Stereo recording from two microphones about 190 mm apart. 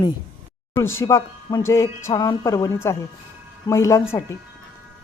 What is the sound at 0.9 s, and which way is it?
Speech, 15° left (ahead or behind).